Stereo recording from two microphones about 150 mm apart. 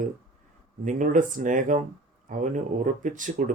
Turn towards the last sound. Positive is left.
turn(degrees=-60)  # may be behind; listen again after turning